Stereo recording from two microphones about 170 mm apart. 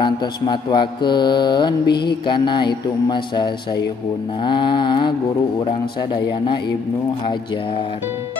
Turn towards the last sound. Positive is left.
turn(degrees=30)  # may be behind; listen again after turning